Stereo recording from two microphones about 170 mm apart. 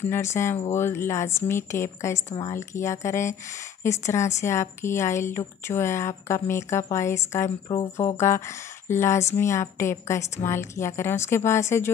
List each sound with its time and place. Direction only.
0.0 s speech: 15° left (ahead or behind)